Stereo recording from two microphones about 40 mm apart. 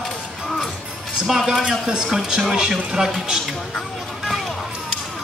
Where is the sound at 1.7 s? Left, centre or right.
Centre.